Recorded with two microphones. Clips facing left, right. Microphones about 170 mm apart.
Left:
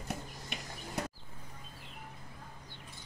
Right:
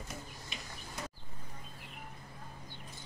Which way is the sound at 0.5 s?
65° left (ahead or behind).